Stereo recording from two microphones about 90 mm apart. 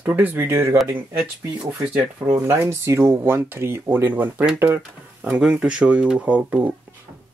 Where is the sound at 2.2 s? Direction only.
30° right (ahead or behind).